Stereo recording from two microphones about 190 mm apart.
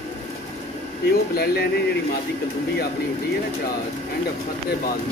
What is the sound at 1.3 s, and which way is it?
Speech, 55° left (ahead or behind).